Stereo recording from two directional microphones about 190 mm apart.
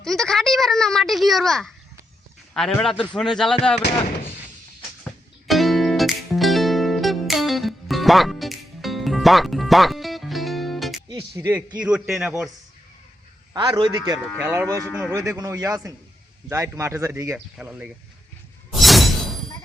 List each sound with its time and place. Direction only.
0.0 s speech: centre (ahead or behind)
5.5 s music: centre (ahead or behind)
11.1 s speech: 15° right (ahead or behind)
11.8 s speech: 5° right (ahead or behind)
13.5 s a man's voice: 25° right (ahead or behind)
14.3 s speech: 10° right (ahead or behind)
18.7 s shatter: centre (ahead or behind)